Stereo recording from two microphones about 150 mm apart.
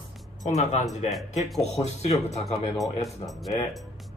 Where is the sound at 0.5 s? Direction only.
50° left (ahead or behind).